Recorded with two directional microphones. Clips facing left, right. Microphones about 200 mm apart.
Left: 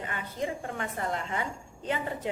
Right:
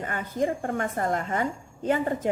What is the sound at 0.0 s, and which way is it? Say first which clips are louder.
A woman's voice: right 6 dB; 45° right (ahead or behind).